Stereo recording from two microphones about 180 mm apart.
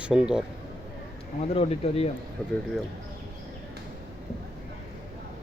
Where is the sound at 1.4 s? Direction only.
35° left (ahead or behind).